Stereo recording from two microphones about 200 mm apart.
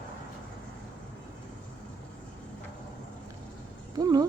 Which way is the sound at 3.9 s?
20° right (ahead or behind).